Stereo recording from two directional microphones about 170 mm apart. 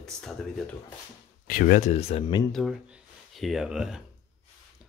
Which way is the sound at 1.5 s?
55° left (ahead or behind).